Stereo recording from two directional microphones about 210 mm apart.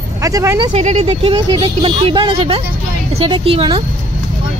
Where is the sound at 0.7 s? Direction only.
35° right (ahead or behind).